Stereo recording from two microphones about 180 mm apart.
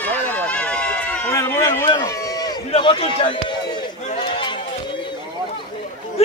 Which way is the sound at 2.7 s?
30° left (ahead or behind).